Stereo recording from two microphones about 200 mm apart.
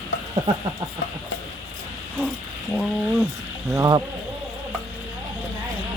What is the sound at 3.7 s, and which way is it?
Speech, 20° right (ahead or behind).